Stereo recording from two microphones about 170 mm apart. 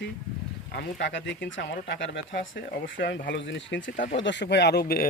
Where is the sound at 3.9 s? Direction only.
50° left (ahead or behind).